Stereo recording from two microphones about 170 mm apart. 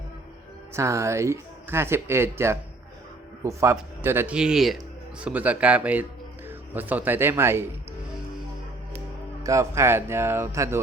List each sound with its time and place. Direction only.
0.7 s speech: 15° right (ahead or behind)
9.4 s speech: 20° right (ahead or behind)